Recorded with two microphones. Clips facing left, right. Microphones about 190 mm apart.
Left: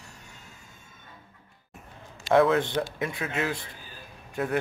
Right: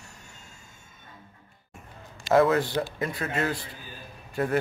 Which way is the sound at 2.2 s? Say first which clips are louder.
Even; centre (ahead or behind).